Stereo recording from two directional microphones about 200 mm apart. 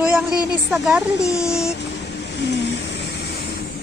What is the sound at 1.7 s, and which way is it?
Vehicle, 60° left (ahead or behind).